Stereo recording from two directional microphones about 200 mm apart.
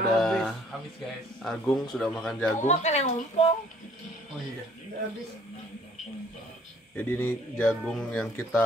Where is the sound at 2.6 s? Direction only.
35° left (ahead or behind).